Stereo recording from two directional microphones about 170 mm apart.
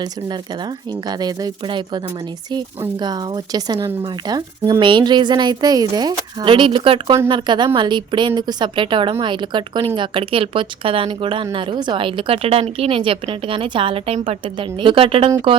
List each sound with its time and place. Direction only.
1.0 s a woman's voice: 25° right (ahead or behind)
3.0 s a woman's voice: 25° right (ahead or behind)